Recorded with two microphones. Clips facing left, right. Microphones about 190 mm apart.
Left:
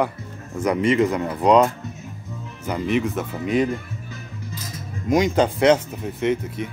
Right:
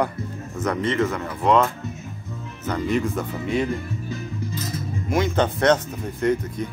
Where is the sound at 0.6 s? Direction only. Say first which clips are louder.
Left 4 dB; 10° left (ahead or behind).